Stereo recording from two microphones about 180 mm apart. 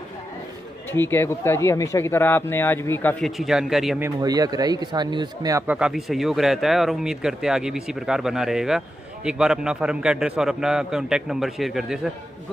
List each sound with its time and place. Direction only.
0.9 s speech: 10° left (ahead or behind)
3.3 s speech: centre (ahead or behind)
4.0 s a man's voice: 20° right (ahead or behind)
5.8 s speech: 5° right (ahead or behind)